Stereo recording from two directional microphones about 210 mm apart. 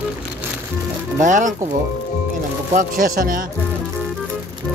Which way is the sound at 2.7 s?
40° right (ahead or behind).